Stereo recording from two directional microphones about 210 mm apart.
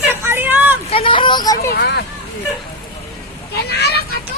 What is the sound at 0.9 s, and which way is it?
Vehicle, 25° left (ahead or behind).